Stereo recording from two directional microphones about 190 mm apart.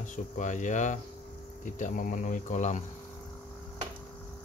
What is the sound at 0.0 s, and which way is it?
Speech, 40° left (ahead or behind).